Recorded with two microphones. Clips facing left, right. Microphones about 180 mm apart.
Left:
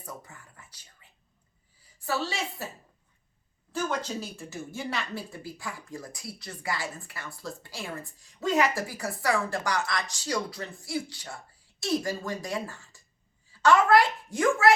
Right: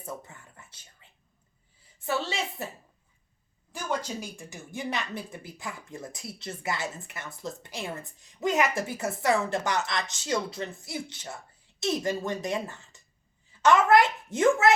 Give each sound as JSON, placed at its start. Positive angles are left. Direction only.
{"t": 2.0, "sound": "a woman's voice", "side_deg": -20}
{"t": 4.2, "sound": "speech", "side_deg": -15}